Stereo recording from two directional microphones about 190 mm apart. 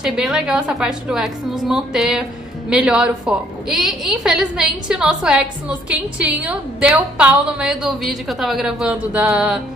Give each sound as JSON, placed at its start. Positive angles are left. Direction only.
{"t": 0.0, "sound": "a woman's voice", "side_deg": -5}